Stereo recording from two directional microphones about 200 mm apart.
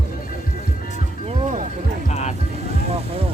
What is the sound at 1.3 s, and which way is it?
Music, 40° right (ahead or behind).